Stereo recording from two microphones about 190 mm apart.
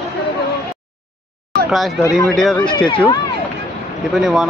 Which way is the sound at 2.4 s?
Centre (ahead or behind).